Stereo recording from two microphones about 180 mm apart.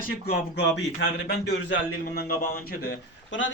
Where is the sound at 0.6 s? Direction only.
70° left (ahead or behind).